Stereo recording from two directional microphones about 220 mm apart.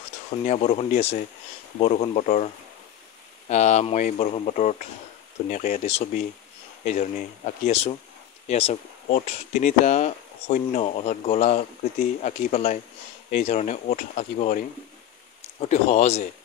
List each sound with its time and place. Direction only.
0.5 s speech: 30° left (ahead or behind)
15.7 s speech: 30° left (ahead or behind)